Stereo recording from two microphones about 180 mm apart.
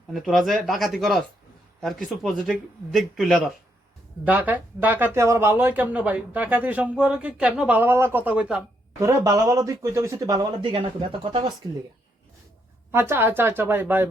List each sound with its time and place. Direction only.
0.1 s a man's voice: centre (ahead or behind)
2.2 s a man's voice: centre (ahead or behind)
9.0 s speech: 20° right (ahead or behind)
12.9 s speech: 15° right (ahead or behind)